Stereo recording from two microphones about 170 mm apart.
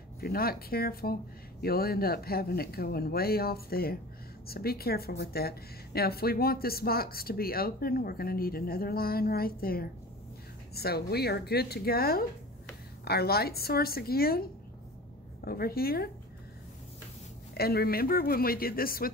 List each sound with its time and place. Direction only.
0.2 s a woman's voice: 60° left (ahead or behind)
17.6 s a woman's voice: 65° left (ahead or behind)